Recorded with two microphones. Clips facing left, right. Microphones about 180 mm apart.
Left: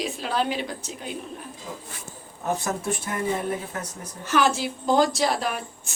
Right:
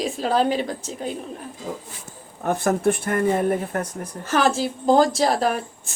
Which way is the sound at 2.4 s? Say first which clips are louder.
Right 7 dB; 55° right (ahead or behind).